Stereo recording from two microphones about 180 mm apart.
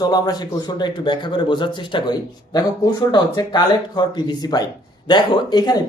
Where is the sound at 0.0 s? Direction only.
20° left (ahead or behind).